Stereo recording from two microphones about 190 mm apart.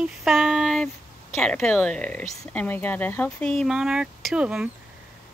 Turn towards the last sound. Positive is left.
turn(degrees=-5)  # may be behind; listen again after turning